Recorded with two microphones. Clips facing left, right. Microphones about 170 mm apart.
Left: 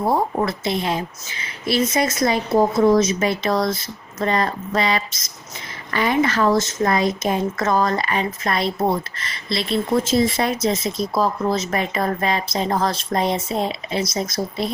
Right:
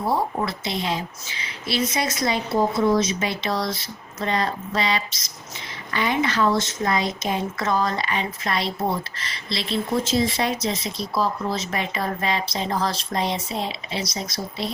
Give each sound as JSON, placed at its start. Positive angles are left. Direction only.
{"t": 0.1, "sound": "speech", "side_deg": 50}